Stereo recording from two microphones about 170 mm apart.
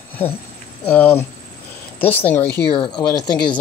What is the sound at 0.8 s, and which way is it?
Speech, 10° left (ahead or behind).